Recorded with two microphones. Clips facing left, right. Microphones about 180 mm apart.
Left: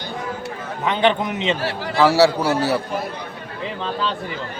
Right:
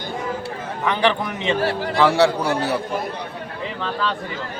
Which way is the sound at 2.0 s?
5° left (ahead or behind).